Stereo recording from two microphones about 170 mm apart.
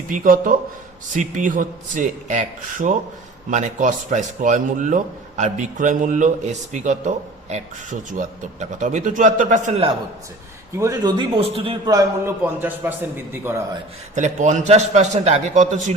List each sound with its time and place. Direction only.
0.1 s a man's voice: 50° right (ahead or behind)
8.1 s a man's voice: 45° right (ahead or behind)
10.8 s a man's voice: 20° right (ahead or behind)
12.6 s a man's voice: 10° right (ahead or behind)
14.2 s a man's voice: 45° right (ahead or behind)